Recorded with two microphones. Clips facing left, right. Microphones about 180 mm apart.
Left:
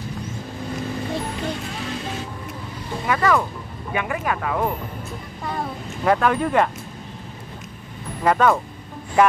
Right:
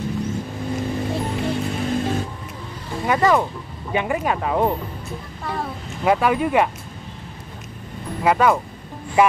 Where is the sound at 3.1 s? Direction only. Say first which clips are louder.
Right 2 dB; 25° right (ahead or behind).